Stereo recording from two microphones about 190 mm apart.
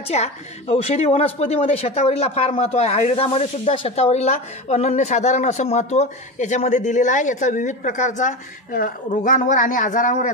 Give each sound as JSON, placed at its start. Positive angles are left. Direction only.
{"t": 0.1, "sound": "speech", "side_deg": 35}